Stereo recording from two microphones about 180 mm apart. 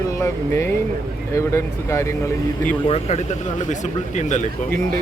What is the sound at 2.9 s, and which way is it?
Speech, 35° left (ahead or behind).